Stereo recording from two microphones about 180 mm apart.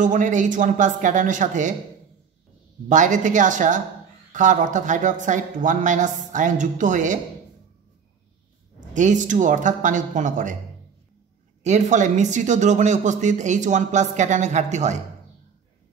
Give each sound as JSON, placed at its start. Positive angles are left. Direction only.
{"t": 0.0, "sound": "speech", "side_deg": -45}
{"t": 2.9, "sound": "speech", "side_deg": -45}
{"t": 8.9, "sound": "speech", "side_deg": -45}
{"t": 11.6, "sound": "speech", "side_deg": -40}